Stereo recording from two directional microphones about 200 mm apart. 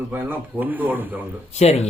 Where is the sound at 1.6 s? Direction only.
35° left (ahead or behind).